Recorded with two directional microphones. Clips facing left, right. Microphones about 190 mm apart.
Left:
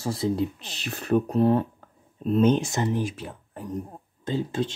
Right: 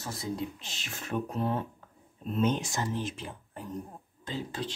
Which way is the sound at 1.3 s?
65° left (ahead or behind).